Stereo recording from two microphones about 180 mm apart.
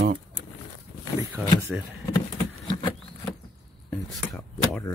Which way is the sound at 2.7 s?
25° left (ahead or behind).